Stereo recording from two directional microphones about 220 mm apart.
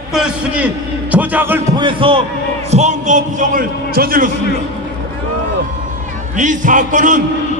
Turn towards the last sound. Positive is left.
turn(degrees=-35)  # may be behind; listen again after turning